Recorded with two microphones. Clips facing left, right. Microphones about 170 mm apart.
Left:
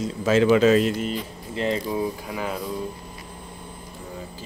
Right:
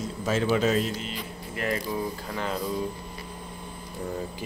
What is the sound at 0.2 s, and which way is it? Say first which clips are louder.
Speech: left 7 dB; 90° left.